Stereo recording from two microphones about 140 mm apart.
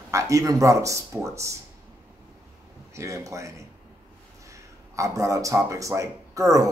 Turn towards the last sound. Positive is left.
turn(degrees=-20)  # may be behind; listen again after turning